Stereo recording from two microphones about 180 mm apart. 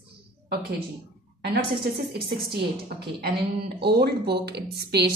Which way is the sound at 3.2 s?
65° right (ahead or behind).